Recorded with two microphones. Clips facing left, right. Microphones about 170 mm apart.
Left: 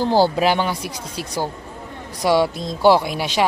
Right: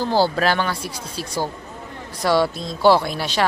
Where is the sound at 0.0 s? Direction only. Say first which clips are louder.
Left 2 dB; 15° left (ahead or behind).